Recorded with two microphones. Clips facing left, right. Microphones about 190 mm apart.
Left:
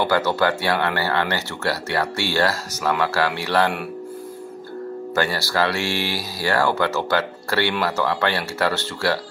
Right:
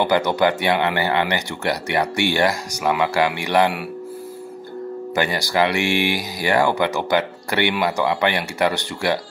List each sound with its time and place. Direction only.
0.0 s speech: 15° right (ahead or behind)
5.1 s speech: 15° right (ahead or behind)